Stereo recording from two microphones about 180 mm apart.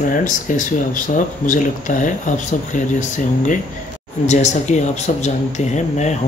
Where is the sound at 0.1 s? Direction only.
45° left (ahead or behind).